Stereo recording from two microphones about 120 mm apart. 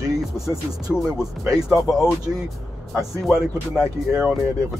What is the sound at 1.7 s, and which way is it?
Speech, 5° right (ahead or behind).